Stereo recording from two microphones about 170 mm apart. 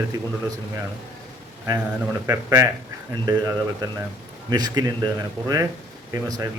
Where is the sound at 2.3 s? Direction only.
15° right (ahead or behind).